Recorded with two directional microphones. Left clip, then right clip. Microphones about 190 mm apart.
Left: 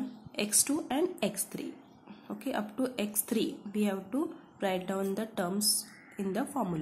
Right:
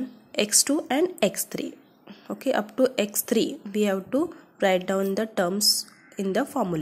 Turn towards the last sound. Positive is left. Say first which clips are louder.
# right 8 dB
turn(degrees=-35)  # may be behind; listen again after turning